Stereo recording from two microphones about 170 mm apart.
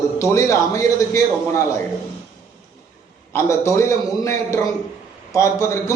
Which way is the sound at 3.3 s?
15° left (ahead or behind).